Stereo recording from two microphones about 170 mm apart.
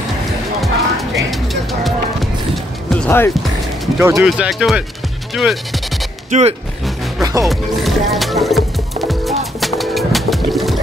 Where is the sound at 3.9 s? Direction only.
15° right (ahead or behind).